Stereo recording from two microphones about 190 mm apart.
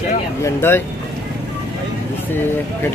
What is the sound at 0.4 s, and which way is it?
Speech, 10° left (ahead or behind).